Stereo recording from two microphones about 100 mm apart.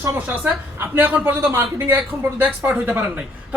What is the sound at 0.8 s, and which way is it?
A man's voice, 15° right (ahead or behind).